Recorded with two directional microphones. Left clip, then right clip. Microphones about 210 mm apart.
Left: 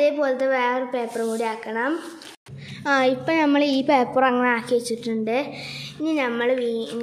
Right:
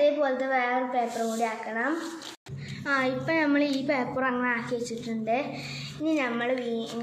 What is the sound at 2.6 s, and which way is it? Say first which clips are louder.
A woman's voice: left 7 dB; 50° left (ahead or behind).